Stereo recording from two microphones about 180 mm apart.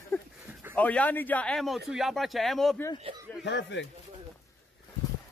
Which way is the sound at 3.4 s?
75° left (ahead or behind).